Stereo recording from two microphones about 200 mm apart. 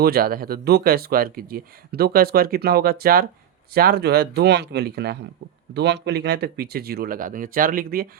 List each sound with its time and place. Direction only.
0.0 s speech: 50° right (ahead or behind)